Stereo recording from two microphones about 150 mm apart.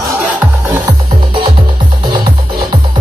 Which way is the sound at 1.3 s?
30° right (ahead or behind).